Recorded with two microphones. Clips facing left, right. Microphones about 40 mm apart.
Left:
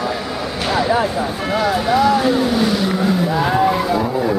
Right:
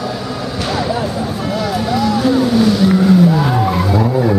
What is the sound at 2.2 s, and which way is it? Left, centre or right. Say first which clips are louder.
Vehicle: right 3 dB; centre.